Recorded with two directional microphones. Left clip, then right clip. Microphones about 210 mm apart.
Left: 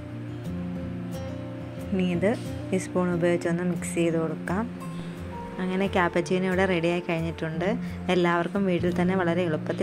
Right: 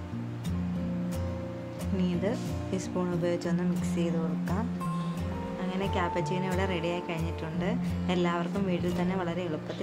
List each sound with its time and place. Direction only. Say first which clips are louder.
2.2 s a woman's voice: left 6 dB; 20° left (ahead or behind)
5.7 s a woman's voice: left 6 dB; 25° left (ahead or behind)